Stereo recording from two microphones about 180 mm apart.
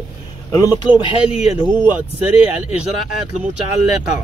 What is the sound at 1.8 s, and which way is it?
Speech, 10° right (ahead or behind).